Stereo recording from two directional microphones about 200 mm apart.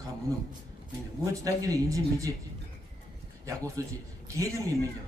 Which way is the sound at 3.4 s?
15° right (ahead or behind).